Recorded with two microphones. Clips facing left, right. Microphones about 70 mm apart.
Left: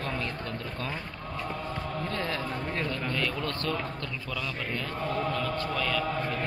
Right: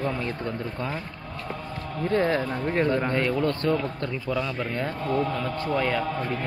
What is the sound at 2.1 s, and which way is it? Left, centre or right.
A man's voice, right.